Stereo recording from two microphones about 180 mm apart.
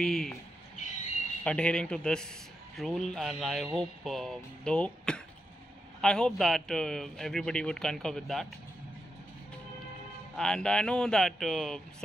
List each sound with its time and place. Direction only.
0.0 s a man's voice: 5° left (ahead or behind)
1.4 s a man's voice: 5° left (ahead or behind)
10.3 s a man's voice: 5° left (ahead or behind)